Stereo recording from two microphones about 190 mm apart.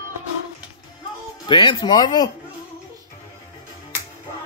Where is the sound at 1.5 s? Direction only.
25° left (ahead or behind).